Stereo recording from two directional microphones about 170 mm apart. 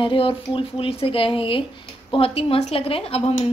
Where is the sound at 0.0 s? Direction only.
30° left (ahead or behind).